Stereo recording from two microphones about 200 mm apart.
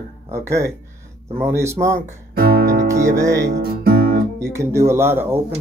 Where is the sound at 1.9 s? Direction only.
50° right (ahead or behind).